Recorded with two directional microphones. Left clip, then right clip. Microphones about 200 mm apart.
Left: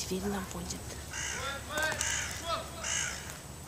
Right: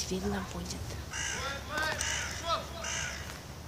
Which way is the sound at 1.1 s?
20° right (ahead or behind).